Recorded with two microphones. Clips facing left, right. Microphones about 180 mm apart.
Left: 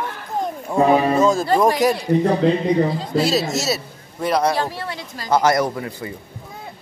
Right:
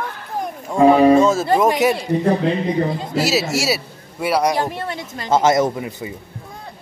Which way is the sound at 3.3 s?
10° right (ahead or behind).